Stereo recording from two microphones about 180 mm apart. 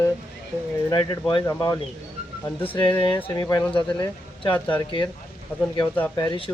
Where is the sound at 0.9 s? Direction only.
25° left (ahead or behind).